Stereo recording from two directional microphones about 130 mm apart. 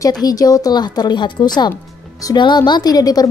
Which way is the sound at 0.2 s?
30° left (ahead or behind).